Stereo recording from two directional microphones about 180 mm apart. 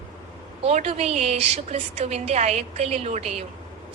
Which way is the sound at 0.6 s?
35° right (ahead or behind).